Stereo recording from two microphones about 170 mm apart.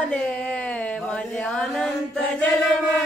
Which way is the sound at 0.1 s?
5° left (ahead or behind).